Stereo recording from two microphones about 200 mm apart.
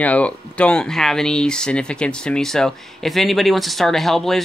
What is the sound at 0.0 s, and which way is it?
Speech, 5° left (ahead or behind).